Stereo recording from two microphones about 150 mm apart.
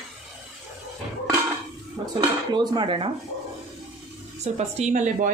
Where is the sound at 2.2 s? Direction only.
30° right (ahead or behind).